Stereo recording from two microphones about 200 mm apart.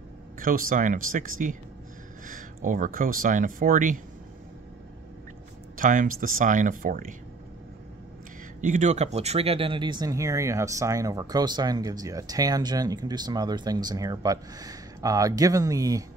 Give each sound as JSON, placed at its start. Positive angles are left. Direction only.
{"t": 0.4, "sound": "speech", "side_deg": -45}
{"t": 5.8, "sound": "speech", "side_deg": -40}
{"t": 8.5, "sound": "speech", "side_deg": -40}